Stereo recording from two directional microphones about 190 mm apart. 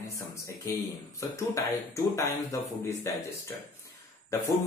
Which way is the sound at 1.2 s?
15° left (ahead or behind).